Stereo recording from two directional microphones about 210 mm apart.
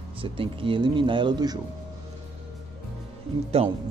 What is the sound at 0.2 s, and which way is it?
Speech, 25° right (ahead or behind).